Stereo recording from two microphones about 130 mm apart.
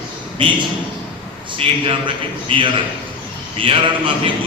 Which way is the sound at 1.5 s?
40° right (ahead or behind).